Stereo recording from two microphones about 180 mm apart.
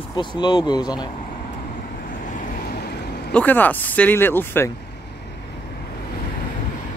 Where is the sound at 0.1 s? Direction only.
25° left (ahead or behind).